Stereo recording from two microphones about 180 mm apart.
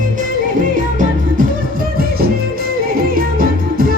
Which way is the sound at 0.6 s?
50° right (ahead or behind).